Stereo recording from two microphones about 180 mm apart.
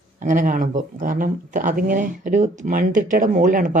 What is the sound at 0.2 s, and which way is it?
Speech, 45° right (ahead or behind).